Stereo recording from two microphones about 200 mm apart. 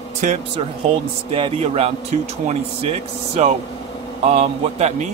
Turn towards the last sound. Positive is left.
turn(degrees=-30)  # may be behind; listen again after turning